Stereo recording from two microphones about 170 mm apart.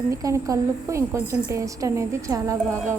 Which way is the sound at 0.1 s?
20° right (ahead or behind).